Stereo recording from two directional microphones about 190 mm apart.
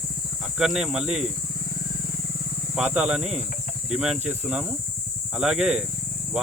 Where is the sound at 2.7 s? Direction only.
5° right (ahead or behind).